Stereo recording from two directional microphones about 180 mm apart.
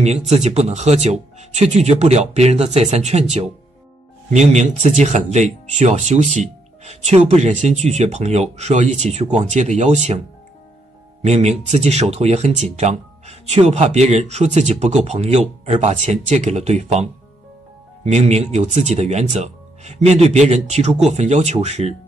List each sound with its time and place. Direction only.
0.3 s speech: 35° right (ahead or behind)
11.2 s speech: 40° right (ahead or behind)